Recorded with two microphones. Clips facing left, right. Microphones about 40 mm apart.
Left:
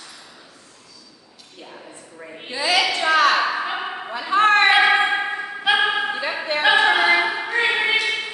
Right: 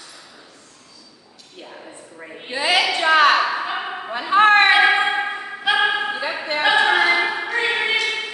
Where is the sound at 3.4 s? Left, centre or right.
Centre.